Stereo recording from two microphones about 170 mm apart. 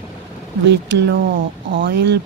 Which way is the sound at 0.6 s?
90° right.